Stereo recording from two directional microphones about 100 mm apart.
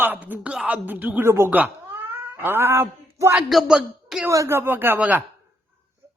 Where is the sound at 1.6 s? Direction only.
20° right (ahead or behind).